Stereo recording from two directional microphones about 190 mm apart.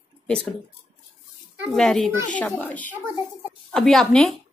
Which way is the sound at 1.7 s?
Centre (ahead or behind).